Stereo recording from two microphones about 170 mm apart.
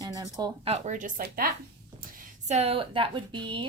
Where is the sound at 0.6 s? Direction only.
40° right (ahead or behind); by 1.5 s 60° right (ahead or behind).